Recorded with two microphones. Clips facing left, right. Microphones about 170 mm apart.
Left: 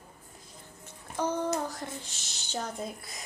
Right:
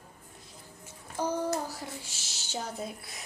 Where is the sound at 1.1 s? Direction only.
10° right (ahead or behind).